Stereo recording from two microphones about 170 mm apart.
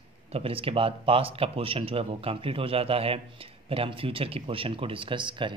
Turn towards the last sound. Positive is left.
turn(degrees=-30)  # may be behind; listen again after turning